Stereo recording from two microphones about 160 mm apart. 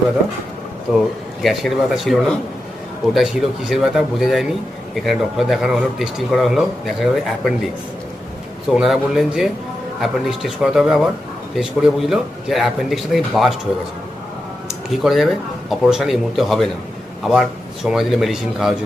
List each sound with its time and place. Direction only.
1.4 s a man's voice: centre (ahead or behind)
8.7 s a man's voice: centre (ahead or behind)
14.8 s a man's voice: centre (ahead or behind)